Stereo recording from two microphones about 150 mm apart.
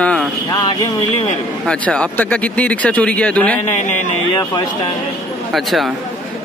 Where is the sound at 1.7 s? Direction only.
5° left (ahead or behind).